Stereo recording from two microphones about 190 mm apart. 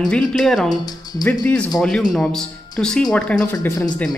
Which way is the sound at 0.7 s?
20° left (ahead or behind).